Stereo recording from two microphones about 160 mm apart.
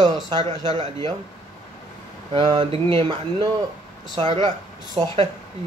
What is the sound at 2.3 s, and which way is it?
Speech, 35° right (ahead or behind).